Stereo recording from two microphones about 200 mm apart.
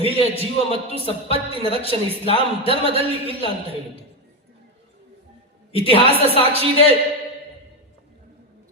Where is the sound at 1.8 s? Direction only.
30° left (ahead or behind).